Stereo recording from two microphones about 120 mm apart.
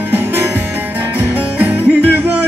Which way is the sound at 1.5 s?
15° right (ahead or behind).